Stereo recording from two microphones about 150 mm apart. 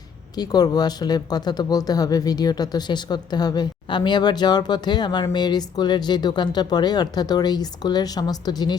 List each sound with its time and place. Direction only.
0.3 s speech: 25° left (ahead or behind)